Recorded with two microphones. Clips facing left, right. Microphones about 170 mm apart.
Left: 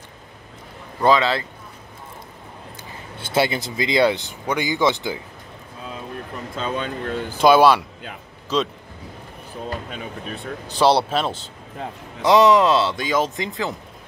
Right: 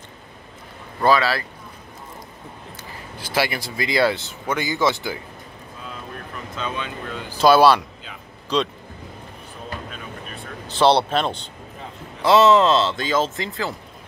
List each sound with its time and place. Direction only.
1.0 s speech: 20° left (ahead or behind)
3.2 s speech: 25° left (ahead or behind)
6.5 s speech: 40° left (ahead or behind)
7.4 s a man's voice: 10° left (ahead or behind)
10.7 s a man's voice: 5° left (ahead or behind)